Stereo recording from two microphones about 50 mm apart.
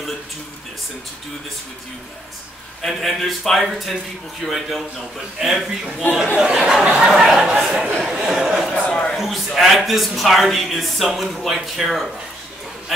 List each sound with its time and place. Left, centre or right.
2.8 s speech: centre
8.7 s speech: left
9.1 s speech: centre